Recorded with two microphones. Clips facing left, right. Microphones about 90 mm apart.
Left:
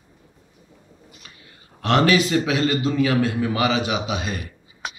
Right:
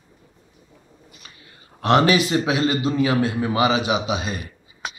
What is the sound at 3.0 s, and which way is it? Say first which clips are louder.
Speech: left 1 dB; 25° right (ahead or behind).